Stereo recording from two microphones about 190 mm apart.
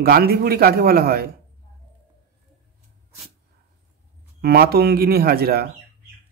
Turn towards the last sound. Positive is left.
turn(degrees=-55)  # may be behind; listen again after turning